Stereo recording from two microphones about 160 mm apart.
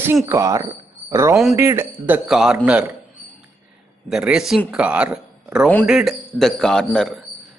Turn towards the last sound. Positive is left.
turn(degrees=5)  # may be behind; listen again after turning